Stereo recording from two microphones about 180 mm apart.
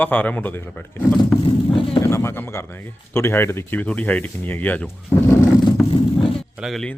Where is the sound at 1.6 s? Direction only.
30° left (ahead or behind).